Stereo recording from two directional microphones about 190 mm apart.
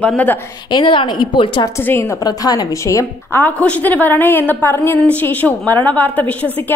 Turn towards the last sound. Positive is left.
turn(degrees=10)  # may be behind; listen again after turning